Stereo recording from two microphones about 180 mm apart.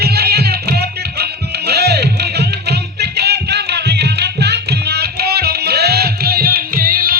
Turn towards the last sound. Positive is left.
turn(degrees=-55)  # may be behind; listen again after turning